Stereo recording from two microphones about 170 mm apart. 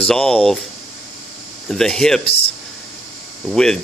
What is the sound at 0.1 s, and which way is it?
Speech, 5° left (ahead or behind).